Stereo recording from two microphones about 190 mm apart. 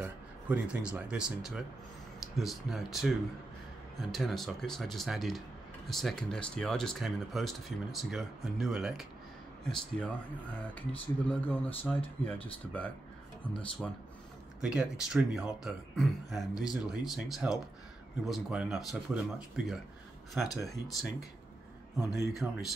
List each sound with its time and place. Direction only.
0.0 s speech: 5° right (ahead or behind); by 12.4 s 10° left (ahead or behind)
13.5 s speech: 5° left (ahead or behind)
20.4 s speech: 20° left (ahead or behind)
22.3 s speech: centre (ahead or behind)